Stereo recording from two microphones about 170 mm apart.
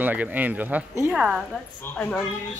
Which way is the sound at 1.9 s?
15° left (ahead or behind).